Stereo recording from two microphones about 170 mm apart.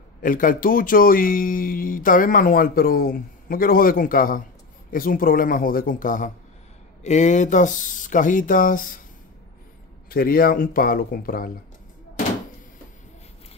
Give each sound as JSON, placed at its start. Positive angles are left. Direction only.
{"t": 0.2, "sound": "speech", "side_deg": 55}
{"t": 10.0, "sound": "speech", "side_deg": 60}